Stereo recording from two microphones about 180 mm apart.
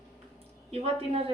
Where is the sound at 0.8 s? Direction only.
35° right (ahead or behind).